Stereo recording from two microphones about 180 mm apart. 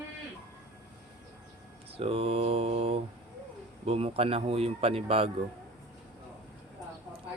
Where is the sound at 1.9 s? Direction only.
35° right (ahead or behind).